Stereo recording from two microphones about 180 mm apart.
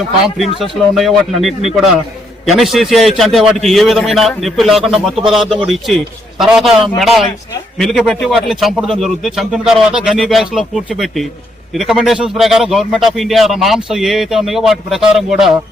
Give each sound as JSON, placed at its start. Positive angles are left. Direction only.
{"t": 0.6, "sound": "a man's voice", "side_deg": 0}